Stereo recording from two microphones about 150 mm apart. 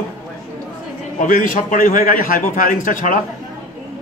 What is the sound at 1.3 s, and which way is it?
A man's voice, 65° left (ahead or behind).